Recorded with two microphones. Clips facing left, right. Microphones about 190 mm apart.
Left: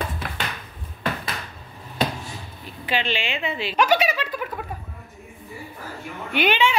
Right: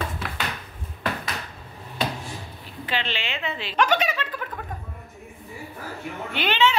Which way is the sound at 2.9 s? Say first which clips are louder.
Left 4 dB; 15° left (ahead or behind).